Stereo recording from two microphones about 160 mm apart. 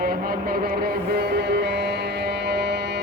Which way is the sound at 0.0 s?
65° right (ahead or behind).